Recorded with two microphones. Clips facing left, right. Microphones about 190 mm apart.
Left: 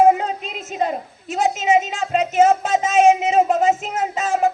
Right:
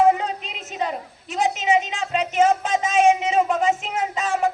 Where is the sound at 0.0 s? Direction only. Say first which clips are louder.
Left 3 dB; 45° left (ahead or behind).